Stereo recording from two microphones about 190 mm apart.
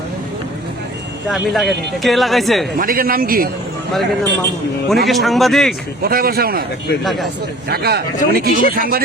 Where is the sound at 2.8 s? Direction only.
50° right (ahead or behind).